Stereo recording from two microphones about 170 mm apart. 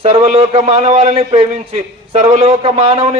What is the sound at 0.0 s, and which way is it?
A man's voice, 40° right (ahead or behind).